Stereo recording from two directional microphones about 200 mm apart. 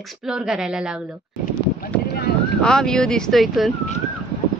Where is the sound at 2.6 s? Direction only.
5° left (ahead or behind).